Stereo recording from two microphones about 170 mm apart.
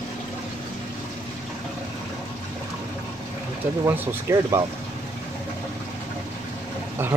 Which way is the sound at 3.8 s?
15° right (ahead or behind).